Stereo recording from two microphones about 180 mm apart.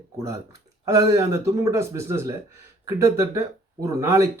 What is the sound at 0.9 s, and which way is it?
A man's voice, 15° right (ahead or behind).